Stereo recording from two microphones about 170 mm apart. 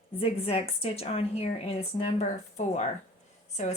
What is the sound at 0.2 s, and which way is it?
A woman's voice, 35° left (ahead or behind).